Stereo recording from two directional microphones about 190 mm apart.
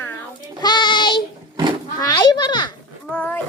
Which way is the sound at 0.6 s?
25° left (ahead or behind).